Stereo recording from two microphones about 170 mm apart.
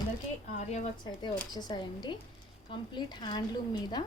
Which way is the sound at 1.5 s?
25° left (ahead or behind).